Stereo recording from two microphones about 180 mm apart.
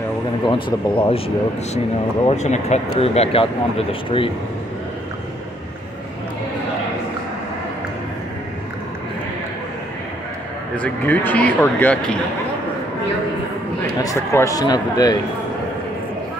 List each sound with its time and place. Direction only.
0.5 s speech: 30° left (ahead or behind)
2.2 s speech: 40° left (ahead or behind)
10.8 s speech: 10° left (ahead or behind)
14.0 s speech: 15° left (ahead or behind)